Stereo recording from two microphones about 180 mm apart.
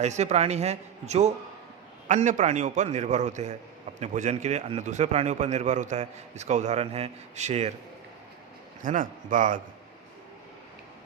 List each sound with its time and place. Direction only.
0.0 s a man's voice: 40° right (ahead or behind)
8.8 s speech: 45° right (ahead or behind)